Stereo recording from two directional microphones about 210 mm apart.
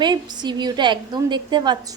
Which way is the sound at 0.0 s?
20° right (ahead or behind).